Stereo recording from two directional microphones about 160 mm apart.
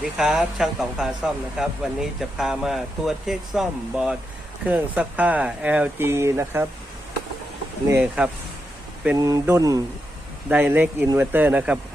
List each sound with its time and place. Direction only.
0.2 s speech: 5° right (ahead or behind)
7.9 s speech: 10° right (ahead or behind)
9.1 s speech: 20° right (ahead or behind)